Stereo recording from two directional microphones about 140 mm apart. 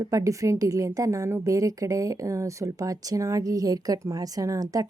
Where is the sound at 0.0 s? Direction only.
25° right (ahead or behind).